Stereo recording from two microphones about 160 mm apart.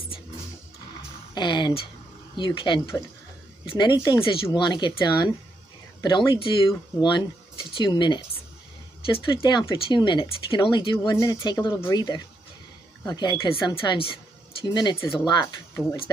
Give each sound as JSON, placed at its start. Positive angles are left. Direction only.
{"t": 1.3, "sound": "speech", "side_deg": 30}
{"t": 15.7, "sound": "speech", "side_deg": 15}